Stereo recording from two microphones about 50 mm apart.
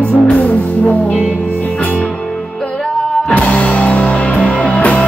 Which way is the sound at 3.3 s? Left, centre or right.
Left.